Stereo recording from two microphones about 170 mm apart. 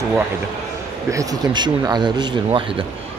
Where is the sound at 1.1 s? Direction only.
25° right (ahead or behind).